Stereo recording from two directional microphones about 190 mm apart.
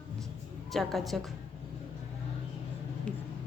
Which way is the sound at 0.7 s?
Centre (ahead or behind).